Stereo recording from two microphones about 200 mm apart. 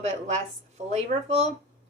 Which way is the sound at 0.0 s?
35° right (ahead or behind).